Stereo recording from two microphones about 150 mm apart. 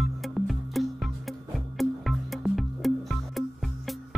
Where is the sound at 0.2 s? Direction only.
Centre (ahead or behind).